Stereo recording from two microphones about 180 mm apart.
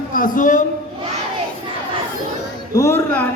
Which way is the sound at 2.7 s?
15° left (ahead or behind).